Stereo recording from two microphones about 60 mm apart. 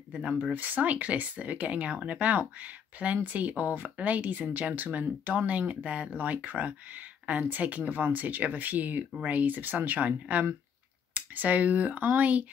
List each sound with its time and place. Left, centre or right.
0.1 s speech: centre